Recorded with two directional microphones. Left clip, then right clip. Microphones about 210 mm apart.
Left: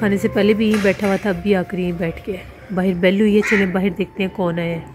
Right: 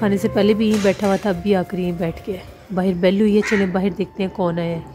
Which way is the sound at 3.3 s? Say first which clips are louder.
Left 2 dB; 35° left (ahead or behind).